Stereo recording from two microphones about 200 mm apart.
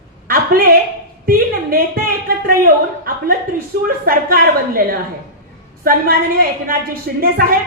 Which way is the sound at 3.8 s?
45° right (ahead or behind).